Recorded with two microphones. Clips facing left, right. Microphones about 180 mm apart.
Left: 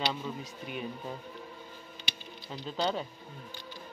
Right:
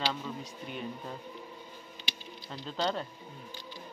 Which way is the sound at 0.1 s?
5° left (ahead or behind).